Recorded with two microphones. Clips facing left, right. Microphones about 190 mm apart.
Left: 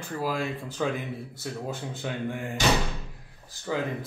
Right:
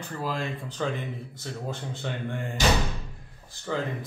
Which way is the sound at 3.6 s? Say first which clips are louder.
Left 1 dB; 10° left (ahead or behind).